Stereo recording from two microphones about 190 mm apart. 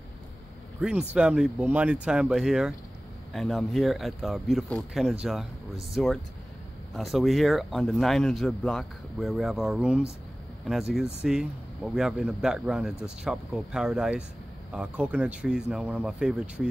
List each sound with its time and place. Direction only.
0.7 s speech: 5° right (ahead or behind)